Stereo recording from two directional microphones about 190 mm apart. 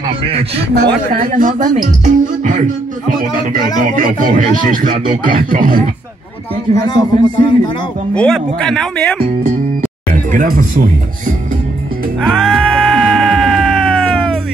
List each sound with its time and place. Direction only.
1.2 s speech: 45° right (ahead or behind)
3.9 s speech: 45° right (ahead or behind)
6.7 s a man's voice: 20° left (ahead or behind)
8.1 s speech: 5° left (ahead or behind)
10.3 s speech: 45° right (ahead or behind)
12.2 s music: centre (ahead or behind)